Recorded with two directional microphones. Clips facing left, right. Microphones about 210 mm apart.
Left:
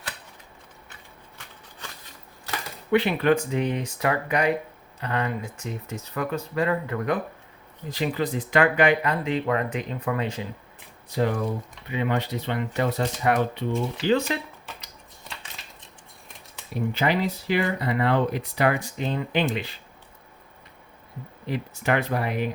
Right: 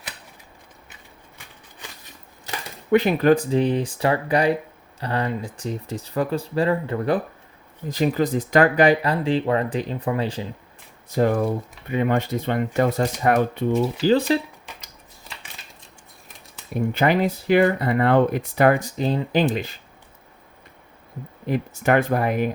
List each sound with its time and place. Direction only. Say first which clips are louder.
2.9 s speech: right 4 dB; 40° right (ahead or behind)
7.9 s speech: right 5 dB; 40° right (ahead or behind)
11.1 s speech: right 5 dB; 45° right (ahead or behind)
14.0 s speech: right 4 dB; 35° right (ahead or behind)
16.7 s speech: right 4 dB; 55° right (ahead or behind)
21.4 s speech: right 5 dB; 50° right (ahead or behind)